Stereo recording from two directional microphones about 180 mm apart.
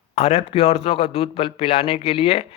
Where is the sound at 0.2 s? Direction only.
35° left (ahead or behind).